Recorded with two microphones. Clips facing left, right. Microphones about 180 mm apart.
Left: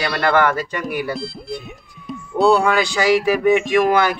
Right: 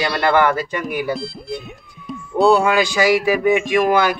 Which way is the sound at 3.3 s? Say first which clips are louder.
Left 1 dB; centre (ahead or behind).